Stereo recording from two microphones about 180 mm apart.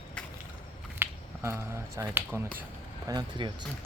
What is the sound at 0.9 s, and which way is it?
Speech, 15° right (ahead or behind).